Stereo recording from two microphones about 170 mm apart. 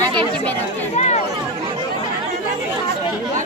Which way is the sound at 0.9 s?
40° left (ahead or behind).